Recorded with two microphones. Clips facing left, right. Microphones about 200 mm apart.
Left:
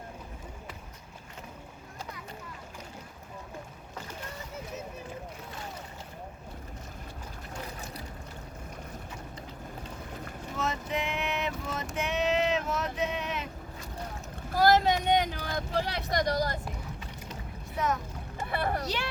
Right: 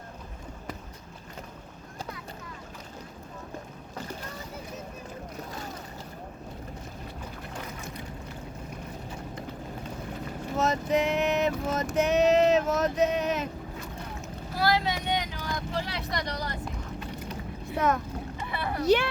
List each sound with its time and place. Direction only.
5.4 s boat: 40° right (ahead or behind)
10.6 s a sound: 40° right (ahead or behind)
14.5 s vehicle: 45° left (ahead or behind)
17.7 s a child's voice: 55° right (ahead or behind)
18.3 s boat: 50° left (ahead or behind)